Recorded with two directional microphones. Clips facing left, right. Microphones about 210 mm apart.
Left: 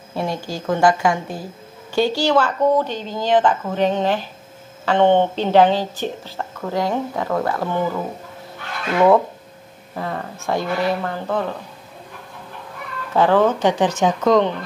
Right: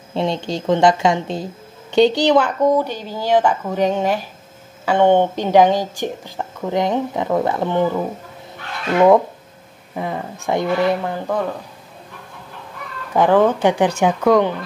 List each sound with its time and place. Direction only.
0.1 s speech: 25° right (ahead or behind)
13.1 s speech: 15° right (ahead or behind)